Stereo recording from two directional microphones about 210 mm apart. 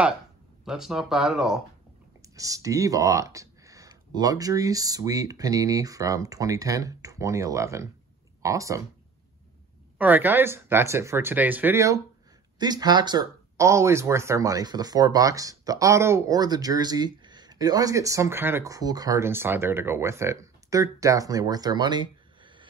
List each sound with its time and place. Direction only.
0.7 s speech: centre (ahead or behind)
2.3 s speech: 15° right (ahead or behind)
9.9 s speech: 10° right (ahead or behind)